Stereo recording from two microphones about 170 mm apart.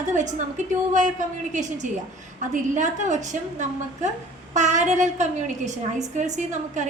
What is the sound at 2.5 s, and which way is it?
A woman's voice, 45° right (ahead or behind).